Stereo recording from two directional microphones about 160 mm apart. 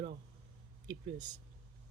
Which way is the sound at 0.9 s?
25° right (ahead or behind).